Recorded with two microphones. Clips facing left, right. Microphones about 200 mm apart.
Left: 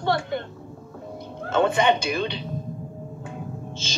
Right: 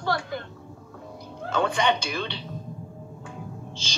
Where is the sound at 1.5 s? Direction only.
20° left (ahead or behind).